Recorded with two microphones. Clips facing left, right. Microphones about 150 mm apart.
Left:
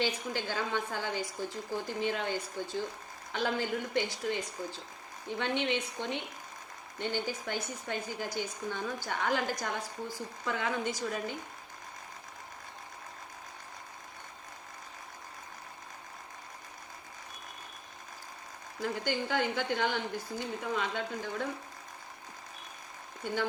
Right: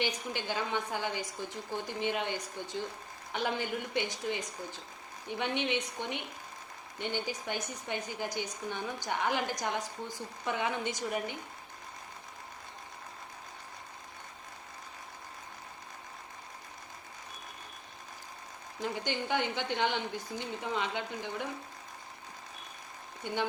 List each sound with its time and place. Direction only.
0.0 s a woman's voice: 15° right (ahead or behind)
18.8 s speech: 20° right (ahead or behind)
23.2 s speech: 20° right (ahead or behind)